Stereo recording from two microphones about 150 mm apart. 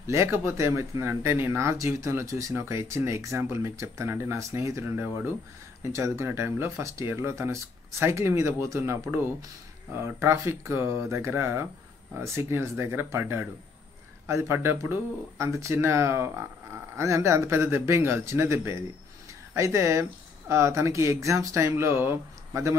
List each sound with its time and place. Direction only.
0.0 s speech: 20° right (ahead or behind)